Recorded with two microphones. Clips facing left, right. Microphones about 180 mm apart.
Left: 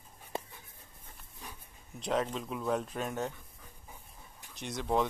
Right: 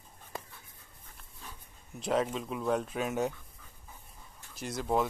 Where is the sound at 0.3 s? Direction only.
25° left (ahead or behind).